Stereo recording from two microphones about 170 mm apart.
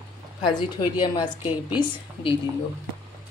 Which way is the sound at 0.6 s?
25° left (ahead or behind).